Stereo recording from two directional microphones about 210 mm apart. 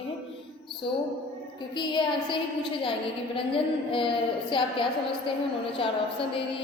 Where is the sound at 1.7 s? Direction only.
20° left (ahead or behind).